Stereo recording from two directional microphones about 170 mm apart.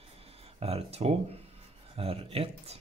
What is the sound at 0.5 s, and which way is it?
Speech, 35° right (ahead or behind).